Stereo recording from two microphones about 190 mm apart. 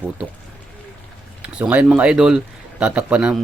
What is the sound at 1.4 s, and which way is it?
Speech, 5° right (ahead or behind).